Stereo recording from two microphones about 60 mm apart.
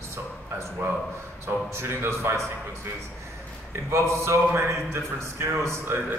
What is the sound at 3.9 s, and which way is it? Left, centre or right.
A man's voice, right.